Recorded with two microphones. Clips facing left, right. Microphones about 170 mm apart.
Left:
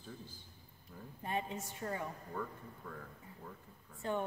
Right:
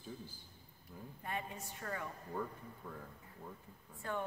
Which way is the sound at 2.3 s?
15° right (ahead or behind).